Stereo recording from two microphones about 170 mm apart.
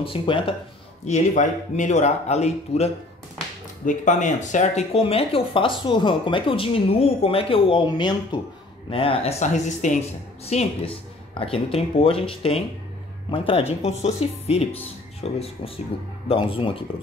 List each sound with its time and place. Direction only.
0.0 s speech: 30° left (ahead or behind)
1.0 s a man's voice: 45° left (ahead or behind)